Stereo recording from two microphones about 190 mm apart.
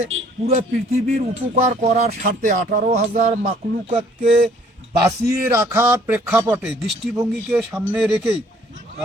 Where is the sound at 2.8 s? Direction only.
35° right (ahead or behind).